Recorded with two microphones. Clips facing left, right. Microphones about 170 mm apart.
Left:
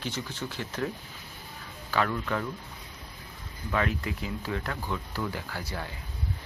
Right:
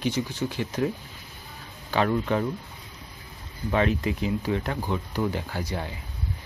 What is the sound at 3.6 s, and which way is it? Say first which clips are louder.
Speech: right 5 dB; 25° right (ahead or behind).